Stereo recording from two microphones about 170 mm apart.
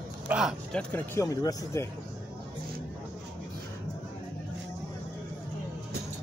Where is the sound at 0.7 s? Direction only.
10° left (ahead or behind).